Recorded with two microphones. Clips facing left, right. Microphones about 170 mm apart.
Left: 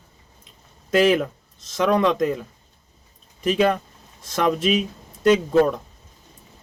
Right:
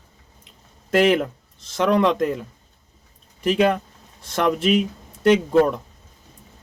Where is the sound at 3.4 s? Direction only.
65° right (ahead or behind).